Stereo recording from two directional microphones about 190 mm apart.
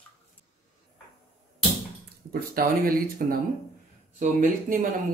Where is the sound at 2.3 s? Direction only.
50° right (ahead or behind).